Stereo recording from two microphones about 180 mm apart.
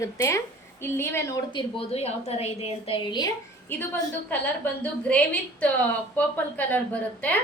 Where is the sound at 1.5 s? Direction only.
35° left (ahead or behind).